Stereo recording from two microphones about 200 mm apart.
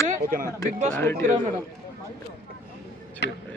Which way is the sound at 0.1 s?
45° right (ahead or behind).